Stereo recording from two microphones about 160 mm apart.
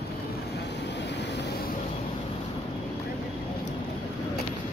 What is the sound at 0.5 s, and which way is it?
Vehicle, 90° left.